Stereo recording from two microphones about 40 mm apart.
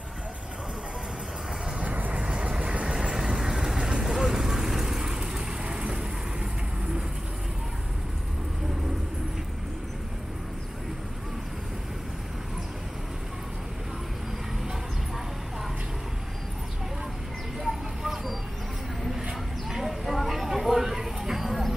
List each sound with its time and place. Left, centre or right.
1.8 s vehicle: right
2.1 s vehicle: right
3.0 s vehicle: centre
17.6 s vehicle: centre
19.7 s a sound: centre